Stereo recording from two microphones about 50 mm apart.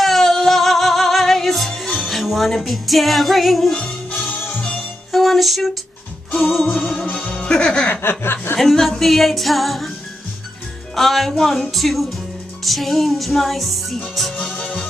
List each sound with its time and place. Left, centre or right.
0.0 s music: centre
2.1 s music: centre
3.7 s music: left
5.1 s music: centre
7.2 s music: centre
7.9 s speech: left
8.5 s music: centre
11.0 s music: centre
14.3 s music: centre